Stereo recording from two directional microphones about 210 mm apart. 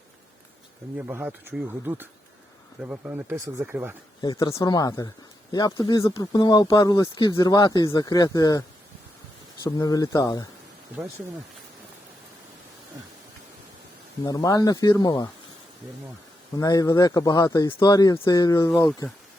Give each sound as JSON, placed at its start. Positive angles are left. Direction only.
{"t": 0.9, "sound": "speech", "side_deg": -10}
{"t": 4.2, "sound": "speech", "side_deg": 20}
{"t": 9.6, "sound": "speech", "side_deg": 15}
{"t": 14.3, "sound": "speech", "side_deg": 15}
{"t": 16.6, "sound": "speech", "side_deg": 15}